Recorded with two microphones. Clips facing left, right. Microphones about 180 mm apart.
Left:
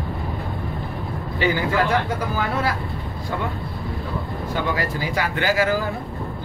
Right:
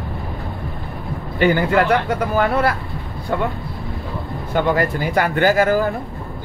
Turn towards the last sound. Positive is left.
turn(degrees=-50)  # may be behind; listen again after turning